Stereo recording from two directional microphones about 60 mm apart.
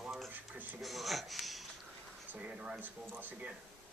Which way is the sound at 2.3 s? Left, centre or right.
Right.